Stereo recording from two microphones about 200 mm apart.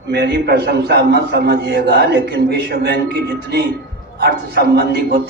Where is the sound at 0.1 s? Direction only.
55° right (ahead or behind).